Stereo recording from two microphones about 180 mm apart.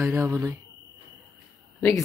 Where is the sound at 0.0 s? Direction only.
15° right (ahead or behind).